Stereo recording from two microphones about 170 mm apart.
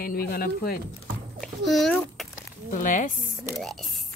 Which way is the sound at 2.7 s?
50° left (ahead or behind).